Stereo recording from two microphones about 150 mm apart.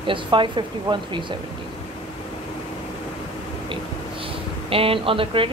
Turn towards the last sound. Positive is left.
turn(degrees=-35)  # may be behind; listen again after turning